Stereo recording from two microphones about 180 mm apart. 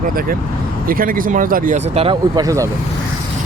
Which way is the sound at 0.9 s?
50° right (ahead or behind).